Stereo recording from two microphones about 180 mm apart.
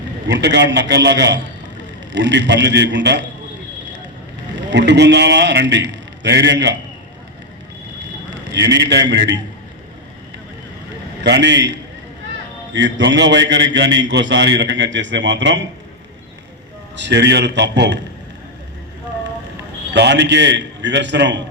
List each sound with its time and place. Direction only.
0.3 s a man's voice: 75° right (ahead or behind)
4.7 s a man's voice: 75° right (ahead or behind)
8.4 s a man's voice: 75° right (ahead or behind)
11.2 s a man's voice: 75° right (ahead or behind)
12.7 s a man's voice: 90° right
17.0 s a man's voice: 75° right (ahead or behind)
19.9 s a man's voice: 75° right (ahead or behind)